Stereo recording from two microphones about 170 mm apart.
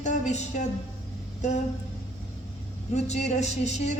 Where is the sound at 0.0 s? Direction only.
45° left (ahead or behind).